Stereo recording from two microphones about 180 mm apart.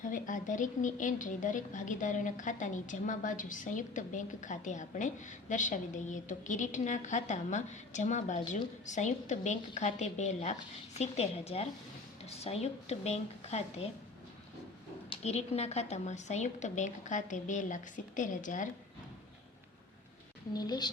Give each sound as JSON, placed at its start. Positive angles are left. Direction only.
{"t": 0.0, "sound": "a woman's voice", "side_deg": 45}
{"t": 15.1, "sound": "a woman's voice", "side_deg": 35}
{"t": 20.5, "sound": "a woman's voice", "side_deg": 20}